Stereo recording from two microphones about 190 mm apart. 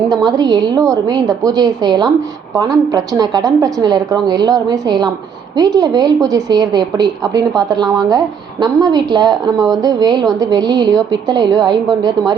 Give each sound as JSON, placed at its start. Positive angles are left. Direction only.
{"t": 0.1, "sound": "a woman's voice", "side_deg": -20}